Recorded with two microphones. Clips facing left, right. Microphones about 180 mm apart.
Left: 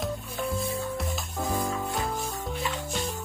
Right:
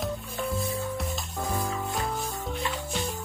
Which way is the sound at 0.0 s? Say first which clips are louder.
Even; centre (ahead or behind).